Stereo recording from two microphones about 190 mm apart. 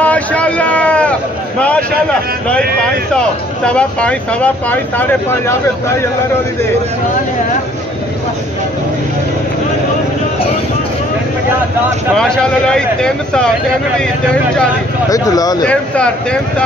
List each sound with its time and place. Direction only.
0.0 s a sound: 5° left (ahead or behind)
2.5 s speech: 5° left (ahead or behind)
12.2 s speech: 5° left (ahead or behind)
15.0 s speech: 20° left (ahead or behind)
15.6 s speech: 5° left (ahead or behind)